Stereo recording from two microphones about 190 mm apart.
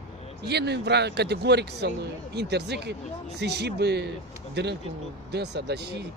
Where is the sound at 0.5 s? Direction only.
60° right (ahead or behind).